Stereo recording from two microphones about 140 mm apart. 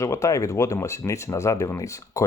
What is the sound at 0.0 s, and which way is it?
Speech, 20° left (ahead or behind).